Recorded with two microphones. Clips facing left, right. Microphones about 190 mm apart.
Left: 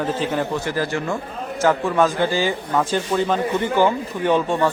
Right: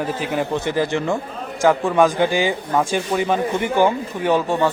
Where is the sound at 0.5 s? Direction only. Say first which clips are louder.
Right 3 dB; 20° right (ahead or behind).